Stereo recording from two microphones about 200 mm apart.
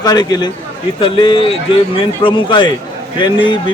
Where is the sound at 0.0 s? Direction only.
20° left (ahead or behind).